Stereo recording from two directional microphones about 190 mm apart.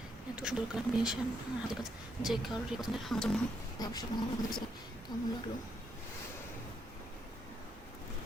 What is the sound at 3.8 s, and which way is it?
Speech, 20° left (ahead or behind).